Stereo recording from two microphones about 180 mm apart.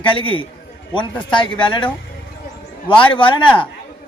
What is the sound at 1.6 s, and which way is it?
Speech, 25° left (ahead or behind).